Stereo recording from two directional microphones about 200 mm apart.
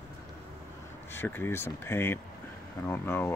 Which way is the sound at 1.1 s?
10° left (ahead or behind).